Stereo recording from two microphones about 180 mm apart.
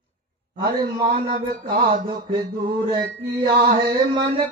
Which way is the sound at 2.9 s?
25° right (ahead or behind).